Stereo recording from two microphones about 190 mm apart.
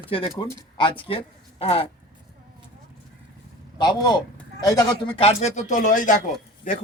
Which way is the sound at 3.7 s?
20° left (ahead or behind).